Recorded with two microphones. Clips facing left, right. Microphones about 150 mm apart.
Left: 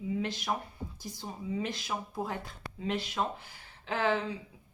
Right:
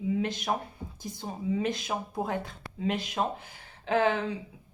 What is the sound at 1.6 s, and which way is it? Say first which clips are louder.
A woman's voice: right 5 dB; 20° right (ahead or behind).